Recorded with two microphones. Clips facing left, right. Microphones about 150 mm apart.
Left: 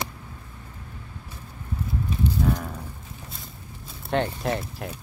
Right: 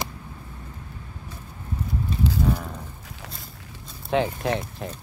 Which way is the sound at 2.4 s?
5° right (ahead or behind).